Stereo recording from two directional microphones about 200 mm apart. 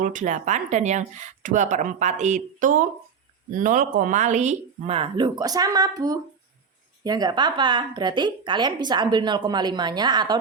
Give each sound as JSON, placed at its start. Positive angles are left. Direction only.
{"t": 0.0, "sound": "a woman's voice", "side_deg": -40}